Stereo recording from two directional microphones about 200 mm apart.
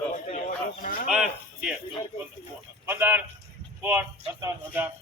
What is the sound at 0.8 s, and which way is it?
Speech, 45° left (ahead or behind).